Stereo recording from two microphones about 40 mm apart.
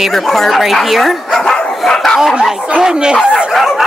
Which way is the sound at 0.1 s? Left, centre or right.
Centre.